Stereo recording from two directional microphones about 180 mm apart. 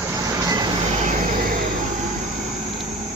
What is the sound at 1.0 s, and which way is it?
Vehicle, 45° right (ahead or behind).